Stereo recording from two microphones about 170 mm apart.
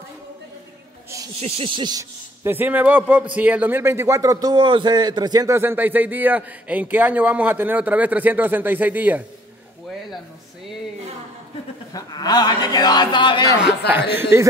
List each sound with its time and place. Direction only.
1.4 s a sound: 30° right (ahead or behind)
2.4 s speech: 10° right (ahead or behind)
11.9 s a man's voice: 25° left (ahead or behind)
13.6 s speech: 5° right (ahead or behind)